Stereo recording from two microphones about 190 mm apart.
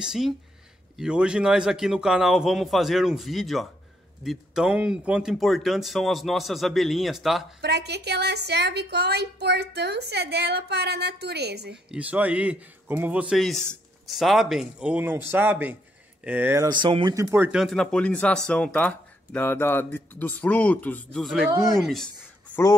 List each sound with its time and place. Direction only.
0.0 s speech: centre (ahead or behind)
7.6 s a woman's voice: 60° right (ahead or behind)
11.9 s a man's voice: 5° right (ahead or behind)